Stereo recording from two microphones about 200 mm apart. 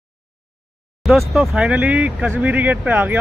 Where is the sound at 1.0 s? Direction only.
Centre (ahead or behind).